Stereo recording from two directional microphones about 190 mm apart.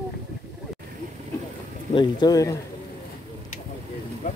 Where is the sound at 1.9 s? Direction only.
25° left (ahead or behind).